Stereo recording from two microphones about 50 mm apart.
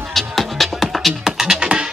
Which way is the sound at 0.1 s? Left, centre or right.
Centre.